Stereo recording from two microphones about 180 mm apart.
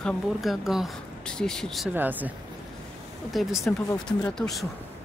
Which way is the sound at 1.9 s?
10° right (ahead or behind).